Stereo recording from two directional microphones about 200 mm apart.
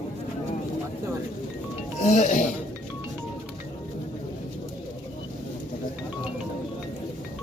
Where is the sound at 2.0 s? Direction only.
35° left (ahead or behind).